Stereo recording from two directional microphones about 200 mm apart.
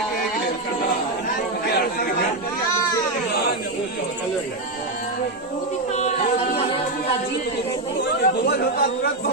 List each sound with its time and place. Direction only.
8.0 s chatter: 55° left (ahead or behind)